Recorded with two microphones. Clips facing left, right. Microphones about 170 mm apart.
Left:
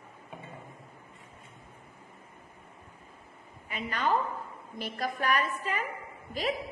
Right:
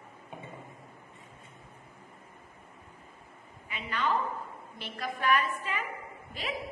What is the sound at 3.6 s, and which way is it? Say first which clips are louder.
A woman's voice: left 2 dB; 45° left (ahead or behind).